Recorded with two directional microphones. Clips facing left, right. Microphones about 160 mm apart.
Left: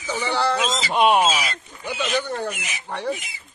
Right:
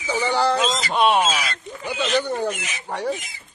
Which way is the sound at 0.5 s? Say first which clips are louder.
Right 2 dB; centre (ahead or behind).